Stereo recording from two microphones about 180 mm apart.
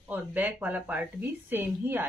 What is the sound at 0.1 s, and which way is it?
A woman's voice, 10° right (ahead or behind).